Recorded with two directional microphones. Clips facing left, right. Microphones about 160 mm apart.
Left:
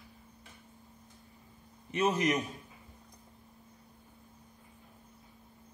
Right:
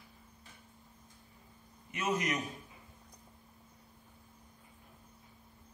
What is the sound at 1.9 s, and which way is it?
Speech, 30° left (ahead or behind).